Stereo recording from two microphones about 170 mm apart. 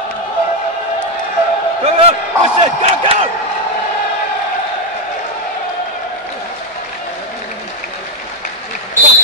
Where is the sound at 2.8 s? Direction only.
35° right (ahead or behind).